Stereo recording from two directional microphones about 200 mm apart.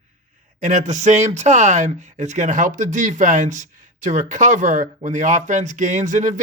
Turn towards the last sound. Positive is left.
turn(degrees=-40)  # may be behind; listen again after turning